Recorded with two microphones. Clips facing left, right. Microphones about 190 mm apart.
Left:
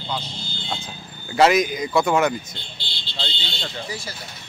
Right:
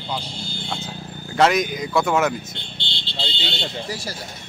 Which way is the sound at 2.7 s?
25° right (ahead or behind).